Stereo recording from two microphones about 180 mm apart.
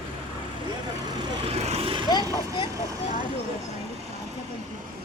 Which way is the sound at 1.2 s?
35° right (ahead or behind).